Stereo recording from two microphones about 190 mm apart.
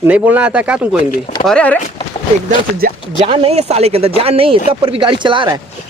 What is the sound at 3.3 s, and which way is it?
Speech, 30° right (ahead or behind).